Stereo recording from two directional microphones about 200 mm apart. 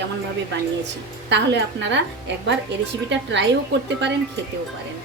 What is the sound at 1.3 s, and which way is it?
Speech, 60° right (ahead or behind).